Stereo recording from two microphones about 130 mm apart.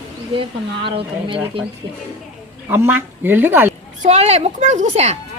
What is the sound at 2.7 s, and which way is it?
A woman's voice, 15° right (ahead or behind).